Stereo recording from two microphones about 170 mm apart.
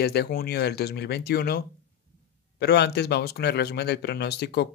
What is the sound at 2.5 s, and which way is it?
Speech, 85° left.